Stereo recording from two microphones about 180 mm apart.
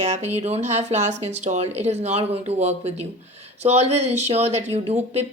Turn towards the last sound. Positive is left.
turn(degrees=-35)  # may be behind; listen again after turning